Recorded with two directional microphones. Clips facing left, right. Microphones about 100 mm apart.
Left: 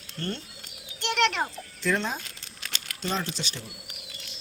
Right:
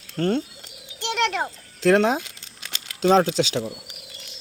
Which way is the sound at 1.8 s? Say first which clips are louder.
Right 10 dB; 90° right.